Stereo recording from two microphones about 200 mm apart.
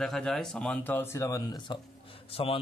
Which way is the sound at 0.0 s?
Centre (ahead or behind).